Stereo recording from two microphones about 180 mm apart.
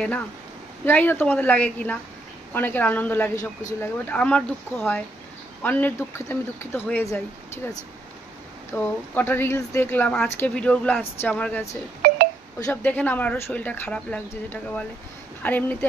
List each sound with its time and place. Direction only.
0.8 s speech: 10° left (ahead or behind)
8.7 s speech: 10° left (ahead or behind)
12.0 s telephone dialing: 55° right (ahead or behind)
12.5 s speech: 15° left (ahead or behind)